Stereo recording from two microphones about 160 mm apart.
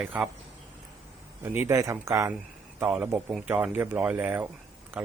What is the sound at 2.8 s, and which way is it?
Speech, 5° right (ahead or behind).